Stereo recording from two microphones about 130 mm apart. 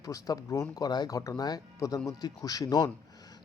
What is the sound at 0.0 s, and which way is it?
Speech, 30° left (ahead or behind).